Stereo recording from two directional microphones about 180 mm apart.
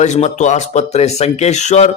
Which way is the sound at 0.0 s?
40° left (ahead or behind).